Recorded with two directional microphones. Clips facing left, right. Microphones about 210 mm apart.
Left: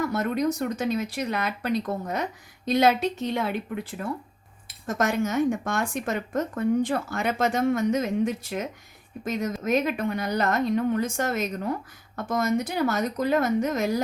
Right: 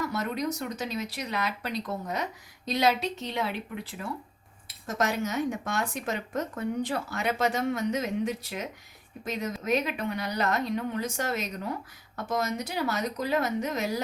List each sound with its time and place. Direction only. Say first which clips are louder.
0.0 s speech: left 5 dB; 50° left (ahead or behind)